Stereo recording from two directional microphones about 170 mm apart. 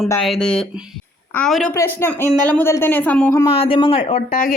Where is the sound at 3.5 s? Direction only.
30° left (ahead or behind).